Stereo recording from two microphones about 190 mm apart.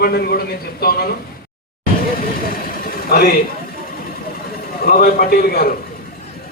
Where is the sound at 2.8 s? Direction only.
50° left (ahead or behind).